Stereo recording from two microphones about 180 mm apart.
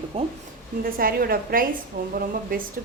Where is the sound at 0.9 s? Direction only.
55° right (ahead or behind).